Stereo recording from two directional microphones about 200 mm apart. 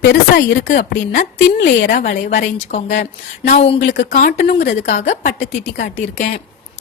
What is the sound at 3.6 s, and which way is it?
Speech, 30° left (ahead or behind).